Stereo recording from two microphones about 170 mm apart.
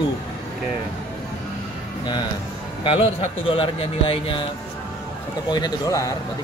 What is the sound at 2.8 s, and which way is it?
A man's voice, 30° left (ahead or behind).